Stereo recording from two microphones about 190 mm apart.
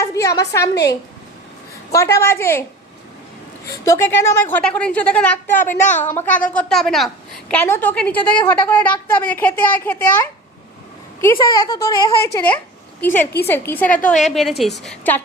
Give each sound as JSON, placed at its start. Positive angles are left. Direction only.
{"t": 0.0, "sound": "a woman's voice", "side_deg": 15}
{"t": 1.9, "sound": "a woman's voice", "side_deg": 15}
{"t": 3.8, "sound": "a woman's voice", "side_deg": 15}
{"t": 11.3, "sound": "speech", "side_deg": 20}
{"t": 13.5, "sound": "a woman's voice", "side_deg": 10}
{"t": 14.0, "sound": "a woman's voice", "side_deg": 40}
{"t": 14.3, "sound": "a woman's voice", "side_deg": 0}